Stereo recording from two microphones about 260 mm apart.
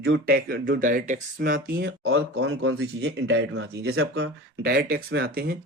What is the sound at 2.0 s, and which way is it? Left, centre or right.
Speech, right.